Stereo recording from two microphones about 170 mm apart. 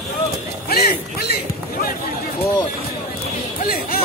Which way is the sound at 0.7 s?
65° left (ahead or behind).